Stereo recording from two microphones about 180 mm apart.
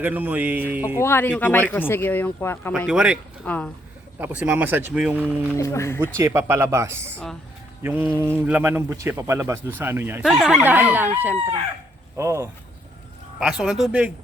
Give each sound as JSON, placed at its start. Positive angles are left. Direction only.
{"t": 0.0, "sound": "speech", "side_deg": -10}
{"t": 0.9, "sound": "speech", "side_deg": 15}
{"t": 2.7, "sound": "speech", "side_deg": -5}
{"t": 3.4, "sound": "speech", "side_deg": 10}
{"t": 4.2, "sound": "speech", "side_deg": -10}
{"t": 5.5, "sound": "speech", "side_deg": 15}
{"t": 6.1, "sound": "speech", "side_deg": -15}
{"t": 13.4, "sound": "speech", "side_deg": 0}